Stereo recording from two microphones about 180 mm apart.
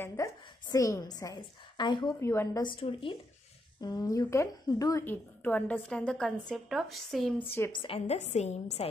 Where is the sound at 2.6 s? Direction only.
30° left (ahead or behind); by 7.3 s centre (ahead or behind).